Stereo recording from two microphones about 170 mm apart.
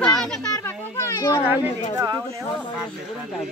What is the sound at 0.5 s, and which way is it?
Speech, 15° left (ahead or behind).